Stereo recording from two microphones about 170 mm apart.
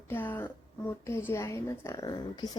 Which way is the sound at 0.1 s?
10° left (ahead or behind).